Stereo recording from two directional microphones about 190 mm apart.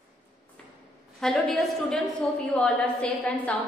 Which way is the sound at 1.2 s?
Centre (ahead or behind).